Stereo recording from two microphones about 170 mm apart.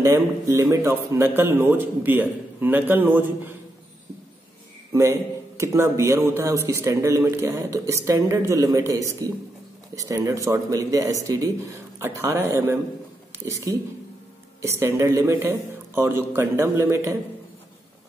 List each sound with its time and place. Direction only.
0.0 s speech: 15° right (ahead or behind)
5.6 s speech: 15° right (ahead or behind)